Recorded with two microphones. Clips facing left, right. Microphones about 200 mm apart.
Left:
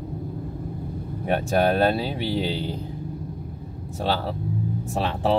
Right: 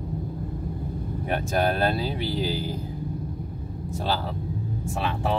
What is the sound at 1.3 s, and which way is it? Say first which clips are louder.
Speech: left 4 dB; 30° left (ahead or behind).